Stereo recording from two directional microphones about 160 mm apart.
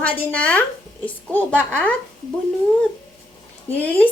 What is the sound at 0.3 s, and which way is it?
A woman's voice, 10° left (ahead or behind).